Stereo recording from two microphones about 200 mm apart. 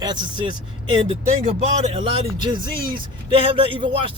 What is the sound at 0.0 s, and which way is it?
A man's voice, 20° right (ahead or behind).